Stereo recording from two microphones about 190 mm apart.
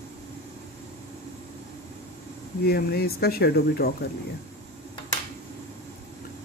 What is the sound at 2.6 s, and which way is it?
Speech, 55° left (ahead or behind).